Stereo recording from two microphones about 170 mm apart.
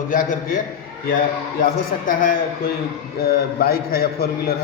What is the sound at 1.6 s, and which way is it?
A man's voice, 55° left (ahead or behind).